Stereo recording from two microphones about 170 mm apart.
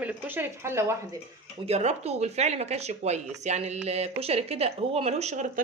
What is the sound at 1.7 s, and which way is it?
A woman's voice, 40° right (ahead or behind).